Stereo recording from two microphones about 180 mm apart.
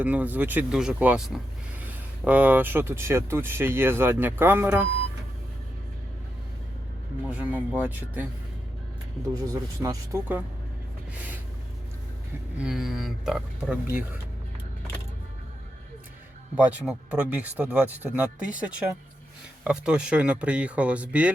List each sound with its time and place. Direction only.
0.0 s speech: 10° right (ahead or behind)
7.3 s speech: 10° right (ahead or behind)
9.2 s speech: 20° right (ahead or behind)
12.5 s speech: 5° right (ahead or behind)
16.6 s speech: 5° right (ahead or behind)